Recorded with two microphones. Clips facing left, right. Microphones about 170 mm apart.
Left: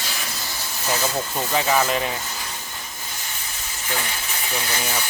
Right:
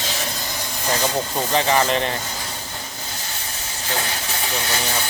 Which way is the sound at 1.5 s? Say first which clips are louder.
Right 2 dB; 5° left (ahead or behind).